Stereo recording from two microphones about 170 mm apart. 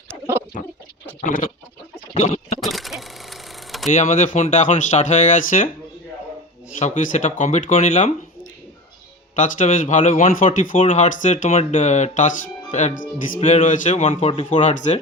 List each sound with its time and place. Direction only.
1.2 s speech: 55° left (ahead or behind)
2.1 s a sound: 45° left (ahead or behind)
2.6 s a sound: centre (ahead or behind)
3.8 s speech: 45° left (ahead or behind)
6.7 s speech: 45° left (ahead or behind)
9.3 s speech: 50° left (ahead or behind)